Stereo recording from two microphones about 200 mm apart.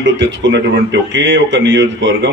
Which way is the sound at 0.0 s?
65° right (ahead or behind).